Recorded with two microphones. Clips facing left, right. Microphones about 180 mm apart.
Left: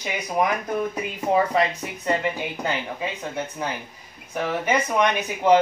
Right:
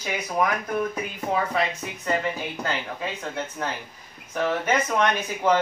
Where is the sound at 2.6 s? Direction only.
15° left (ahead or behind).